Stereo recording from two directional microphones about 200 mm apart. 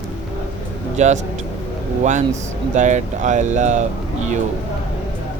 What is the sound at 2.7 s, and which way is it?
Speech, 35° right (ahead or behind).